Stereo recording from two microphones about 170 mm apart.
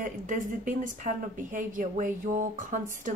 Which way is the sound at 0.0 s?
50° right (ahead or behind).